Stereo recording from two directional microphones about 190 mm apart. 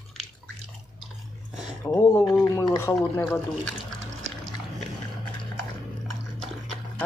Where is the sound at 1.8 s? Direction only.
20° left (ahead or behind).